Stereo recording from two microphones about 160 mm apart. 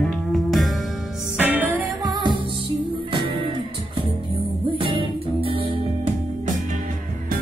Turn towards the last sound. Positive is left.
turn(degrees=-35)  # may be behind; listen again after turning